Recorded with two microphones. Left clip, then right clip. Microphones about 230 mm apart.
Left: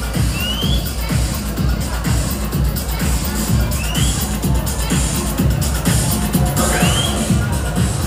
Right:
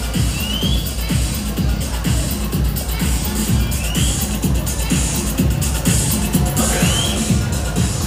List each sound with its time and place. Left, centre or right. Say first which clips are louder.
6.5 s music: left 3 dB; centre